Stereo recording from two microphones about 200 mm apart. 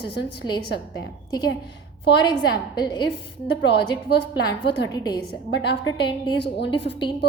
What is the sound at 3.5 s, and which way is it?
A woman's voice, 55° left (ahead or behind).